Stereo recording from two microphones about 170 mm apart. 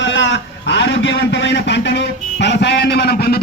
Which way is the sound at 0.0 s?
90° left.